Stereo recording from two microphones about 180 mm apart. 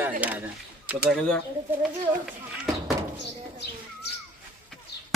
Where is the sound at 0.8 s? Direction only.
5° right (ahead or behind).